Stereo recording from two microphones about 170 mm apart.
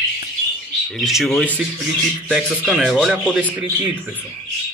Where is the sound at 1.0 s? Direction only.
Centre (ahead or behind).